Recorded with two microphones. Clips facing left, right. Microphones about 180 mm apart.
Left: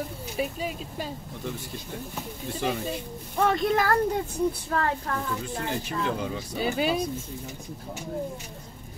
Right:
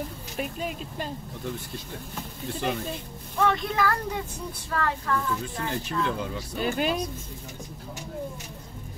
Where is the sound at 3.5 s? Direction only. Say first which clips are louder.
Left 5 dB; 45° left (ahead or behind).